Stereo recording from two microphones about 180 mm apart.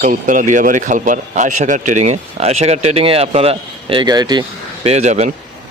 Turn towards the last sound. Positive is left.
turn(degrees=-40)  # may be behind; listen again after turning